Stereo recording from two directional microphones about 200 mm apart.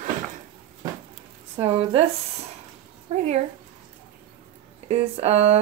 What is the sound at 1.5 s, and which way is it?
Speech, 25° right (ahead or behind).